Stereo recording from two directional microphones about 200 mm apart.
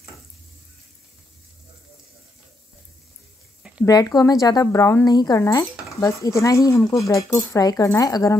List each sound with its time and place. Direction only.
3.8 s speech: 15° left (ahead or behind)